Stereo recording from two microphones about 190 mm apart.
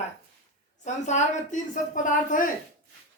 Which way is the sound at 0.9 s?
40° left (ahead or behind).